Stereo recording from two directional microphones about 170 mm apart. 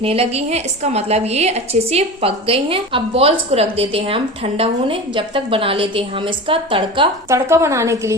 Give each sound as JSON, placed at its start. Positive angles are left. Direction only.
{"t": 0.0, "sound": "a woman's voice", "side_deg": -35}
{"t": 7.3, "sound": "a woman's voice", "side_deg": -15}